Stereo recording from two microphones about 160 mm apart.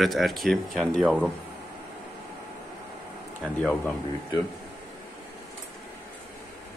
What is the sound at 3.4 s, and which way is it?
Speech, 10° left (ahead or behind).